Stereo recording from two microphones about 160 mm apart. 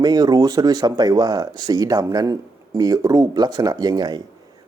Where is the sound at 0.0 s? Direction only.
25° right (ahead or behind).